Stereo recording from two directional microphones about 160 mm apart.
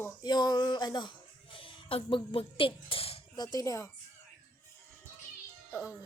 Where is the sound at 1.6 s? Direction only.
35° left (ahead or behind).